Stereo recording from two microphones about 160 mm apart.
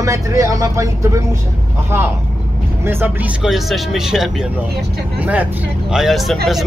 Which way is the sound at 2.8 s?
15° right (ahead or behind).